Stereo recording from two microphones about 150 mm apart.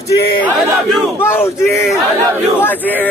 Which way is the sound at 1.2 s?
15° left (ahead or behind).